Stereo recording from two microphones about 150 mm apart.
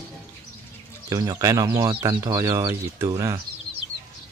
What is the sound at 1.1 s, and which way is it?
Speech, 25° right (ahead or behind).